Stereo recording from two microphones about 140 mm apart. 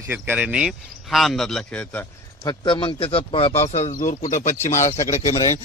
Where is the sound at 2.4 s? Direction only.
35° left (ahead or behind); by 3.9 s 50° left (ahead or behind).